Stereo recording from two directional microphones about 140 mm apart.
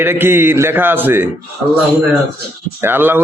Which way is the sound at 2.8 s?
15° right (ahead or behind).